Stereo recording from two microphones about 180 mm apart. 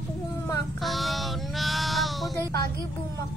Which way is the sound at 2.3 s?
20° left (ahead or behind).